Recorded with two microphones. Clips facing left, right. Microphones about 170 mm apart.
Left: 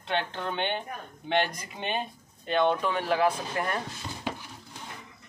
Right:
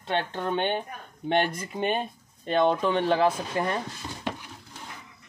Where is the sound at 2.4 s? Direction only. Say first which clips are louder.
Right 2 dB; 30° right (ahead or behind).